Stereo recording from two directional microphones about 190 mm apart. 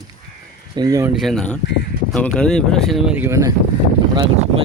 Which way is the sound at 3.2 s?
15° right (ahead or behind).